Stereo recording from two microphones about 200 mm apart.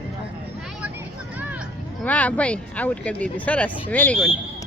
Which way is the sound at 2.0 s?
5° left (ahead or behind).